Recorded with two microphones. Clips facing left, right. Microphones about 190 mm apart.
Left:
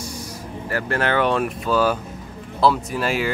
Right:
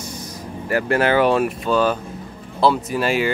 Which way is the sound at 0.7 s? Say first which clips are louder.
Right 5 dB; 15° right (ahead or behind).